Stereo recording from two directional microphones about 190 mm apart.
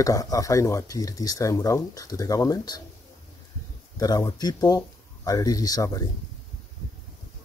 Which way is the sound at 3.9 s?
20° left (ahead or behind).